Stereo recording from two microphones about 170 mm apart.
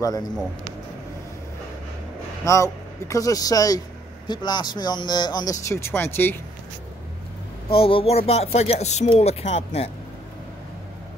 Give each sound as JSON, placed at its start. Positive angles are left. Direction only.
{"t": 2.4, "sound": "speech", "side_deg": 15}
{"t": 7.7, "sound": "speech", "side_deg": 35}